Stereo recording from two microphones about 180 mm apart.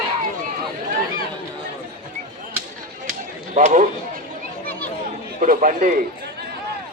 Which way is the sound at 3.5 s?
45° right (ahead or behind).